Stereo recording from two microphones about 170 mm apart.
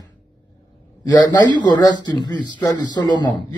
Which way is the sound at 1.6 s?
25° left (ahead or behind).